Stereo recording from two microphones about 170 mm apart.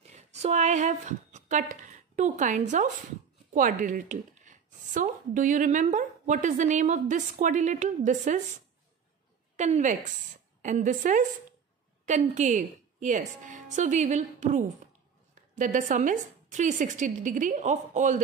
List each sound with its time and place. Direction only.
0.3 s a woman's voice: 40° right (ahead or behind)
9.6 s a woman's voice: 45° right (ahead or behind)